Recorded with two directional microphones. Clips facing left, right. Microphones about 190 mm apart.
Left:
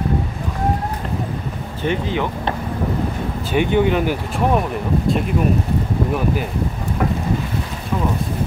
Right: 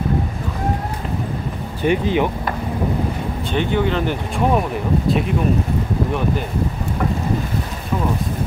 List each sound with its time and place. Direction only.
1.8 s speech: 15° right (ahead or behind)
3.5 s speech: 15° left (ahead or behind); by 5.2 s centre (ahead or behind)